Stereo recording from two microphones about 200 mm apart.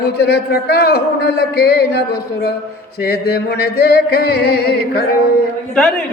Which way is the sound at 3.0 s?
50° left (ahead or behind).